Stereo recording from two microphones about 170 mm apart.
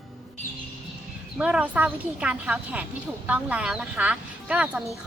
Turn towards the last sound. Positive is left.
turn(degrees=-5)  # may be behind; listen again after turning